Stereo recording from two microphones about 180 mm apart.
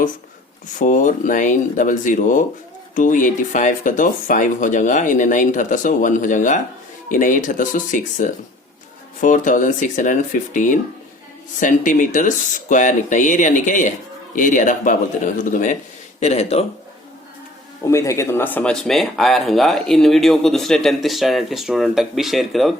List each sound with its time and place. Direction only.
0.8 s speech: 45° left (ahead or behind)
17.8 s speech: 15° left (ahead or behind); by 22.7 s centre (ahead or behind)